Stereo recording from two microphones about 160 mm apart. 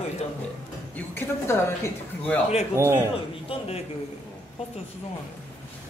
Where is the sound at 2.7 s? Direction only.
15° right (ahead or behind).